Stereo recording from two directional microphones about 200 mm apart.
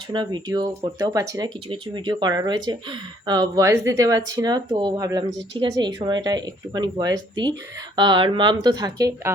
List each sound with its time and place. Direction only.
0.1 s speech: 20° right (ahead or behind)